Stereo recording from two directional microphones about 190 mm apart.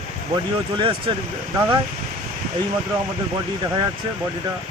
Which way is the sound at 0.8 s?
25° right (ahead or behind).